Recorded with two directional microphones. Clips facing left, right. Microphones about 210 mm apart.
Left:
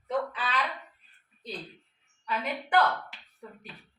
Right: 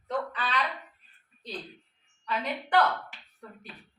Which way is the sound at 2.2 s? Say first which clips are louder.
Even; 5° left (ahead or behind).